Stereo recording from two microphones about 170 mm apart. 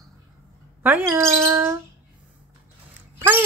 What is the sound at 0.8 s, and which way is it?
Speech, 10° right (ahead or behind).